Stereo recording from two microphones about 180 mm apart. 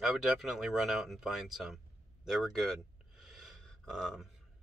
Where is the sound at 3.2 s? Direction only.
Centre (ahead or behind).